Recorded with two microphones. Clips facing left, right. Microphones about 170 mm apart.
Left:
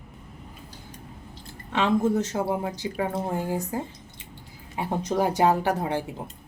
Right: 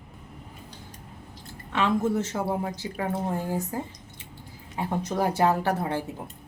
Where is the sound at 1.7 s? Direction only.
15° left (ahead or behind).